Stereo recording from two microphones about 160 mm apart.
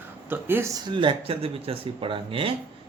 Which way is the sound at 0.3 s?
15° right (ahead or behind).